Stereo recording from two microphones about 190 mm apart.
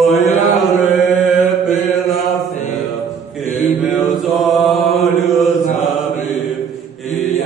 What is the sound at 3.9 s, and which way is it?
Mantra, centre (ahead or behind).